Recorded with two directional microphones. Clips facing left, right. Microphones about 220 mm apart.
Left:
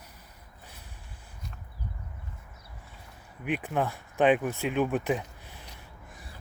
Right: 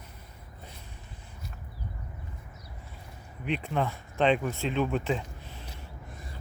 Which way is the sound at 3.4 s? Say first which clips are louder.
Left 1 dB; 10° left (ahead or behind).